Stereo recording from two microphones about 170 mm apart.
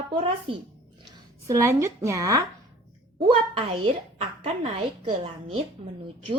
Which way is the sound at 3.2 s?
30° right (ahead or behind).